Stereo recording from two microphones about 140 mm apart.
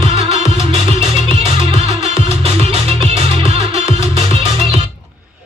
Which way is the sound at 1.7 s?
50° right (ahead or behind).